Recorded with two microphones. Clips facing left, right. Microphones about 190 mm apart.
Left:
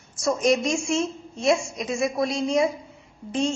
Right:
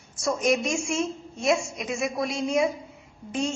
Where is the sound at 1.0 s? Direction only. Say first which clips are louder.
Left 2 dB; centre (ahead or behind).